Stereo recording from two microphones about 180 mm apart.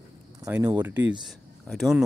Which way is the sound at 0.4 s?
15° right (ahead or behind).